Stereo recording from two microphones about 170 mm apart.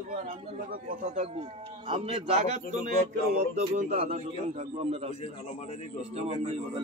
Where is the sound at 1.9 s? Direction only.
35° right (ahead or behind).